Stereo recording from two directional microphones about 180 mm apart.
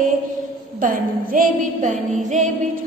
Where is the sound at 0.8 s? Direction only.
50° right (ahead or behind).